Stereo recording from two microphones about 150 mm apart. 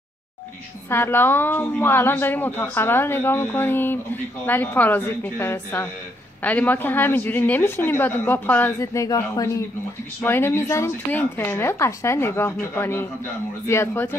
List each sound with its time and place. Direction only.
0.8 s a woman's voice: 15° left (ahead or behind)